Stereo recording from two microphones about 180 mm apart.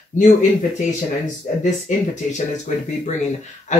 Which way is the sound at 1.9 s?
45° left (ahead or behind).